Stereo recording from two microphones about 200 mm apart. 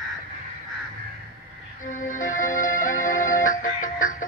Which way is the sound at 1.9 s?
40° left (ahead or behind).